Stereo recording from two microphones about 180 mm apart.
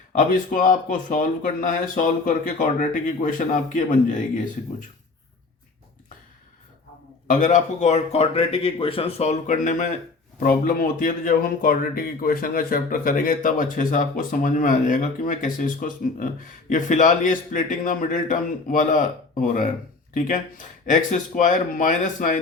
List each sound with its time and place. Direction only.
0.1 s speech: 50° left (ahead or behind)
7.3 s a man's voice: 45° left (ahead or behind)